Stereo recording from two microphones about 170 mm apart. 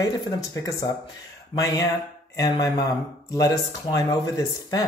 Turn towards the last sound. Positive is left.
turn(degrees=20)  # may be behind; listen again after turning